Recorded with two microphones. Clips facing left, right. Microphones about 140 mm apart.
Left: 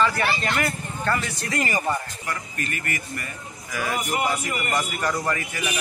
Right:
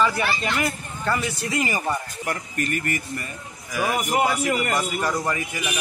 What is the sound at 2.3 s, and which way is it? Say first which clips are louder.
Speech: right 6 dB; 45° right (ahead or behind).